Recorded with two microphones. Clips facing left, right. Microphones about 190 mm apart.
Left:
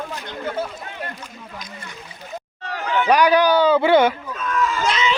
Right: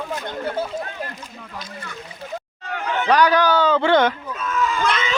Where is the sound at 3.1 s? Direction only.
10° left (ahead or behind).